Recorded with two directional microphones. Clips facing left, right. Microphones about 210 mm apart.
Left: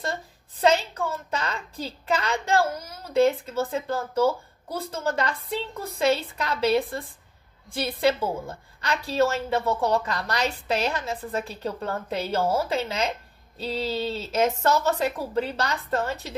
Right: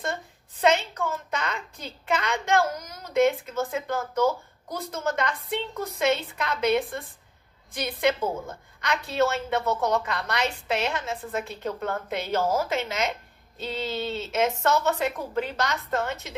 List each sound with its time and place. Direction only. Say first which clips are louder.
0.0 s a woman's voice: even; 35° left (ahead or behind)